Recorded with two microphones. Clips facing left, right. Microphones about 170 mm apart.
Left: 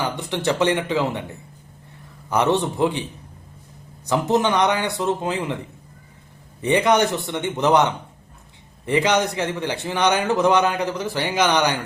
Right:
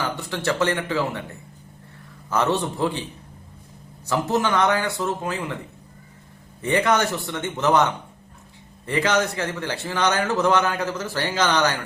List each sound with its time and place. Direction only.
0.0 s a man's voice: 20° left (ahead or behind)
4.0 s speech: 20° left (ahead or behind)
6.6 s a man's voice: 15° left (ahead or behind)